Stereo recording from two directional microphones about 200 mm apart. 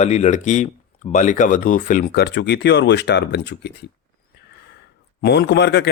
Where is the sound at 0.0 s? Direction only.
35° left (ahead or behind).